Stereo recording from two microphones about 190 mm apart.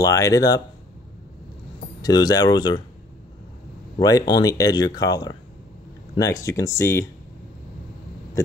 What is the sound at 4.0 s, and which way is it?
Speech, 20° left (ahead or behind).